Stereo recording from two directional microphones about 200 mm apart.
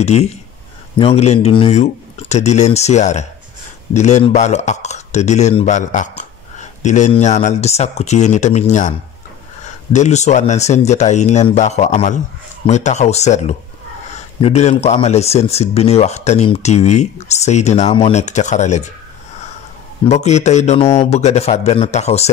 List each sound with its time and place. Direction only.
0.0 s speech: 35° left (ahead or behind)
9.9 s speech: 35° left (ahead or behind)
20.1 s speech: 35° left (ahead or behind)